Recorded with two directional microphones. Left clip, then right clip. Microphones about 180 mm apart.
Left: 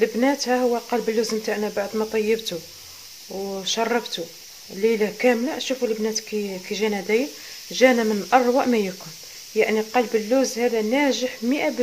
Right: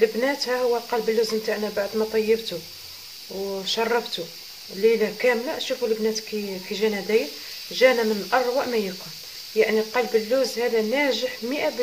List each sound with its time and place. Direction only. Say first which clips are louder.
0.0 s speech: left 1 dB; 35° left (ahead or behind)
3.6 s speech: left 1 dB; 35° left (ahead or behind)